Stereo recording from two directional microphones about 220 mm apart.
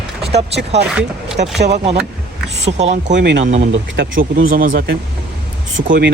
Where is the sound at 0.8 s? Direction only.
5° right (ahead or behind).